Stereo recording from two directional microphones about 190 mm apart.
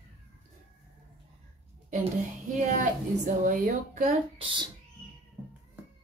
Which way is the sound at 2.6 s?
40° right (ahead or behind).